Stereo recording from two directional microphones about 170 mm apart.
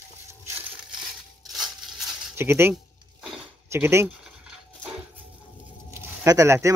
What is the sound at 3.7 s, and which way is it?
Speech, 15° right (ahead or behind).